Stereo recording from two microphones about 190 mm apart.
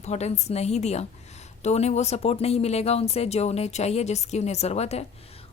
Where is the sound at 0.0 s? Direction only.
35° left (ahead or behind).